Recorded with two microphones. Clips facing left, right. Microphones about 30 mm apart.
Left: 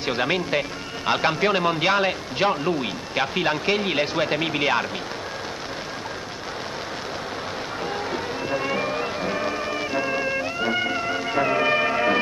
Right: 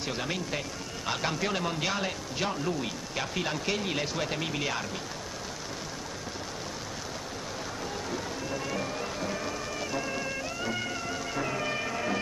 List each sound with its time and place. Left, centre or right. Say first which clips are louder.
0.0 s a man's voice: left 9 dB; left
8.1 s music: left 8 dB; left